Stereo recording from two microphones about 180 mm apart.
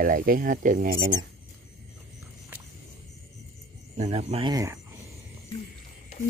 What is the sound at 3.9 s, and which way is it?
Speech, 35° right (ahead or behind).